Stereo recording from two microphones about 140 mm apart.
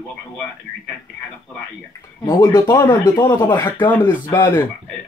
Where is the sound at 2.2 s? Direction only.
20° left (ahead or behind).